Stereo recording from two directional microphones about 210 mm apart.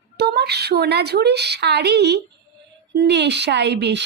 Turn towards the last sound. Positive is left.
turn(degrees=-55)  # may be behind; listen again after turning